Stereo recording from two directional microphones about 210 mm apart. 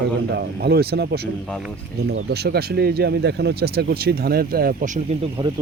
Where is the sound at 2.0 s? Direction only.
50° right (ahead or behind).